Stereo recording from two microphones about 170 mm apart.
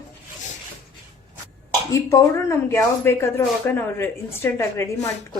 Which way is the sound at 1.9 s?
15° left (ahead or behind).